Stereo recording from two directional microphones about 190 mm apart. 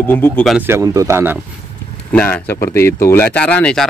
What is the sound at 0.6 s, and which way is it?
Speech, 15° right (ahead or behind).